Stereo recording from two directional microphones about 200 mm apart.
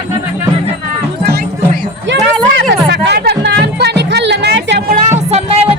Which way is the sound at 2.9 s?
55° right (ahead or behind).